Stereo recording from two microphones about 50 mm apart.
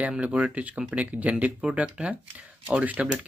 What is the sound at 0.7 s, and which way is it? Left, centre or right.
Speech, right.